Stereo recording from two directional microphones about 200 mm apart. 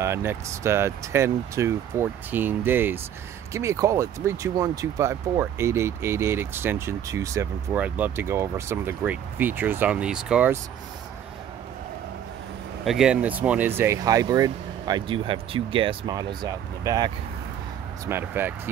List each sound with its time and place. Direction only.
0.0 s speech: 15° right (ahead or behind)
12.8 s speech: 5° right (ahead or behind)